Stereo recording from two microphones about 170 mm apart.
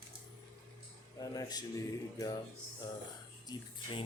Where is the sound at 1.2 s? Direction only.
20° left (ahead or behind).